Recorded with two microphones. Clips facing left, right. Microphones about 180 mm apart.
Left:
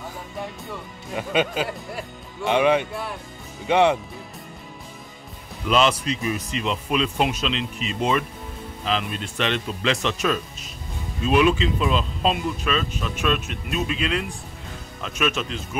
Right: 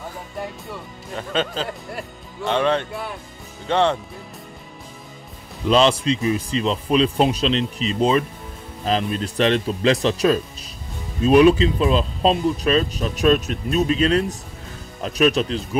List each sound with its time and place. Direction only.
1.1 s speech: 10° left (ahead or behind)
2.4 s speech: 10° left (ahead or behind)
2.9 s speech: centre (ahead or behind)
3.6 s speech: 10° left (ahead or behind)
5.7 s speech: 30° right (ahead or behind)